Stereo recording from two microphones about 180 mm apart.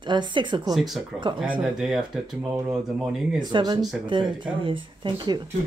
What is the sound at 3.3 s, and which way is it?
Speech, 25° right (ahead or behind).